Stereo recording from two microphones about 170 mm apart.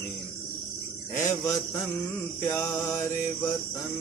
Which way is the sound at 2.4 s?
10° left (ahead or behind).